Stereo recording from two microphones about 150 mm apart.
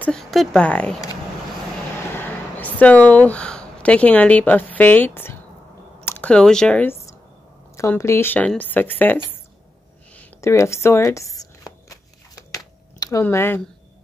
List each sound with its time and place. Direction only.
0.0 s speech: 5° left (ahead or behind)
2.1 s speech: 10° left (ahead or behind)
10.1 s a sound: 20° left (ahead or behind)
13.2 s speech: 15° left (ahead or behind)